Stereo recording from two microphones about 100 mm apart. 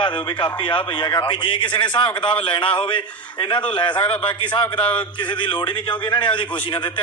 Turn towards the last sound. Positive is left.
turn(degrees=50)  # may be behind; listen again after turning